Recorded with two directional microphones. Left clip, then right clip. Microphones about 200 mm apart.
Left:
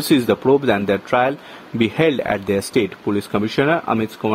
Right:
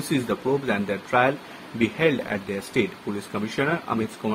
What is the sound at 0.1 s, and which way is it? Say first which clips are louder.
Speech: left 9 dB; 45° left (ahead or behind).